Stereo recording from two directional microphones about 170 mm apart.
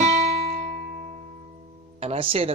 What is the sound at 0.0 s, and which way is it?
Music, 40° right (ahead or behind).